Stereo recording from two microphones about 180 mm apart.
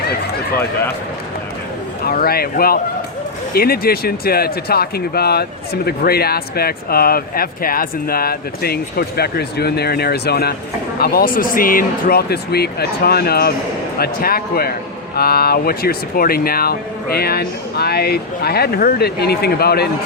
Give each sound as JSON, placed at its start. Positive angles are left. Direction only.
{"t": 2.0, "sound": "speech", "side_deg": 55}